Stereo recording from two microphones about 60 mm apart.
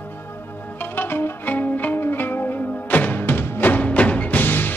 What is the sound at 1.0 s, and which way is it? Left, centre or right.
Music, left.